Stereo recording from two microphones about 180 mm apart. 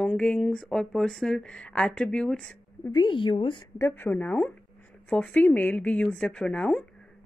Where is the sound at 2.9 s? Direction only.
25° left (ahead or behind).